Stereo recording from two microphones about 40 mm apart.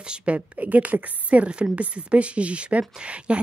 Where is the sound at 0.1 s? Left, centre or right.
Right.